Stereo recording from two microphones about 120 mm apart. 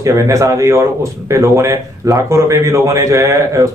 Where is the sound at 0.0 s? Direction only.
25° right (ahead or behind).